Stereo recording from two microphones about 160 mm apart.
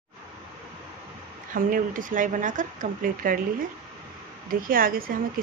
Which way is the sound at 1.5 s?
60° right (ahead or behind).